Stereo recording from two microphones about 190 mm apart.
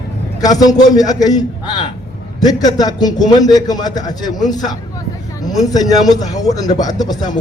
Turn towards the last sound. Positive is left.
turn(degrees=20)  # may be behind; listen again after turning